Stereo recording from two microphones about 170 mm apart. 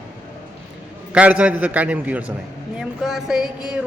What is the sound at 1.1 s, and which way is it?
A man's voice, 5° right (ahead or behind).